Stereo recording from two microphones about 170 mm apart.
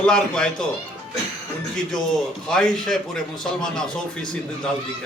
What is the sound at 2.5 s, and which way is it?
A man's voice, 5° left (ahead or behind).